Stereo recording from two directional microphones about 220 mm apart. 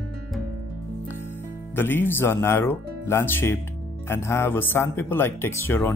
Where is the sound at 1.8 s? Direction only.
10° left (ahead or behind).